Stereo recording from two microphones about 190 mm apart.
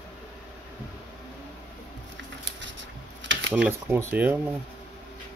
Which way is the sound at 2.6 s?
70° right (ahead or behind).